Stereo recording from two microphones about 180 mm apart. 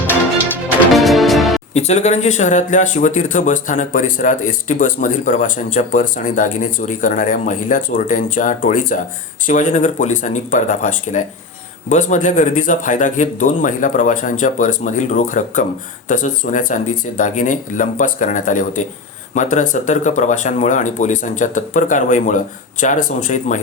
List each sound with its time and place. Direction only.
0.9 s music: centre (ahead or behind)
1.7 s speech: 40° left (ahead or behind)